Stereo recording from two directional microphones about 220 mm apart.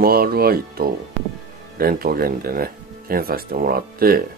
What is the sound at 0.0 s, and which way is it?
Speech, 45° right (ahead or behind).